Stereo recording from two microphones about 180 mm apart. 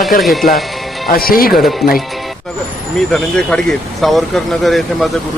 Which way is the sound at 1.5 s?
Centre (ahead or behind).